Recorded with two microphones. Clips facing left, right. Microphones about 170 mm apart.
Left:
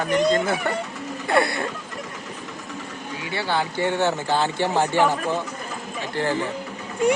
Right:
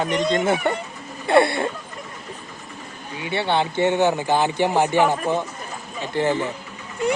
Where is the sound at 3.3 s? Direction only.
25° right (ahead or behind).